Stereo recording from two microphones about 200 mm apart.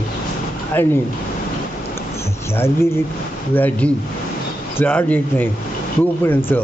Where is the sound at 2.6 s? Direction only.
10° left (ahead or behind).